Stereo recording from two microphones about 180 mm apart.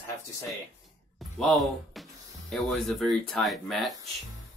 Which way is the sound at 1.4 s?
5° left (ahead or behind).